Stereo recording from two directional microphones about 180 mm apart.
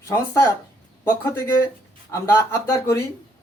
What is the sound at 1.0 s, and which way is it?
Speech, 10° left (ahead or behind).